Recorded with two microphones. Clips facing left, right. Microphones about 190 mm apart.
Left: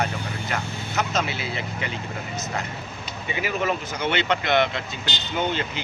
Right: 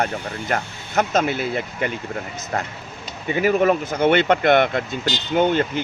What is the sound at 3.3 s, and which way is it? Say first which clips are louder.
Speech: right 9 dB; 50° right (ahead or behind).